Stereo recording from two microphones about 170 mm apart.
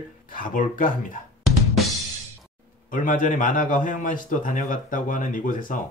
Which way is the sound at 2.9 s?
50° left (ahead or behind).